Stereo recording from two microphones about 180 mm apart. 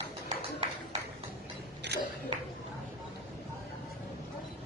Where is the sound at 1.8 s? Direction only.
70° right (ahead or behind).